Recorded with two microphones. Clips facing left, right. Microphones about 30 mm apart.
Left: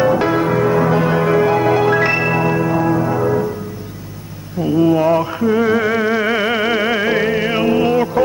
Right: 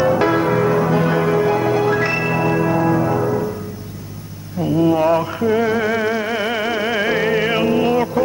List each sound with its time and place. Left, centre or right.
0.0 s music: centre
2.5 s music: centre
4.6 s mantra: centre
5.7 s music: centre